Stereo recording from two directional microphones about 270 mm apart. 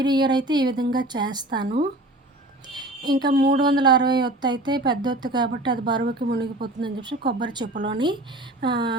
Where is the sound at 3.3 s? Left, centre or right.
Right.